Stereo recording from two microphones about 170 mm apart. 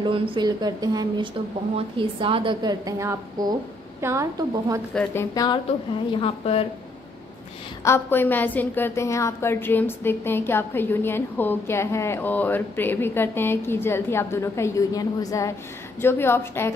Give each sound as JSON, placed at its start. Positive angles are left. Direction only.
{"t": 0.0, "sound": "a woman's voice", "side_deg": -30}
{"t": 5.3, "sound": "speech", "side_deg": 20}
{"t": 5.7, "sound": "a woman's voice", "side_deg": 35}
{"t": 7.8, "sound": "a woman's voice", "side_deg": 15}